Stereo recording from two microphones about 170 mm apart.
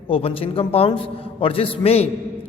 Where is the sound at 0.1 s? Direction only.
35° left (ahead or behind).